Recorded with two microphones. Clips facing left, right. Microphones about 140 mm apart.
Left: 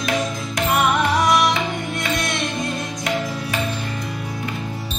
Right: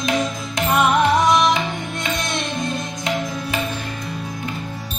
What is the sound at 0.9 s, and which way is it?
Music, 20° right (ahead or behind).